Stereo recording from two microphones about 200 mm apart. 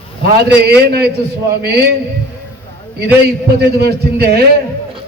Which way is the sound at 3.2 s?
55° right (ahead or behind).